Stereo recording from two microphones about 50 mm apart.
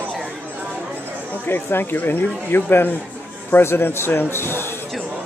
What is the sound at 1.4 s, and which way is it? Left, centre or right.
Speech, left.